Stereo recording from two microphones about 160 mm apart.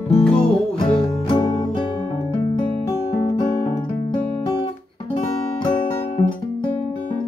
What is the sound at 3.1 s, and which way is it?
Music, 25° left (ahead or behind).